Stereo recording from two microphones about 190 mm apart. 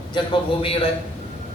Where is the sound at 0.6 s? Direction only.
30° left (ahead or behind).